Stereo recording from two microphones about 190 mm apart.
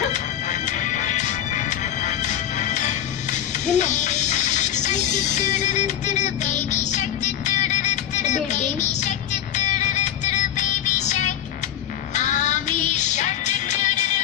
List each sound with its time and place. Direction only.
0.1 s music: 40° left (ahead or behind)